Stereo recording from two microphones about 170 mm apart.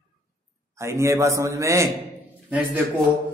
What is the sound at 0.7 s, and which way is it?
Speech, 15° right (ahead or behind).